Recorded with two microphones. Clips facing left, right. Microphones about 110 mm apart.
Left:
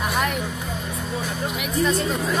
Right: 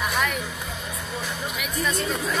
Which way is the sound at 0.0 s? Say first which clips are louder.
Left 2 dB; 20° left (ahead or behind).